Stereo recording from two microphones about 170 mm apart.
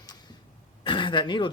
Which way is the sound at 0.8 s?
30° left (ahead or behind).